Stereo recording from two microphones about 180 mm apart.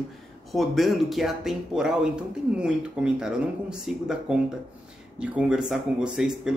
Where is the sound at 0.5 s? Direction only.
Centre (ahead or behind).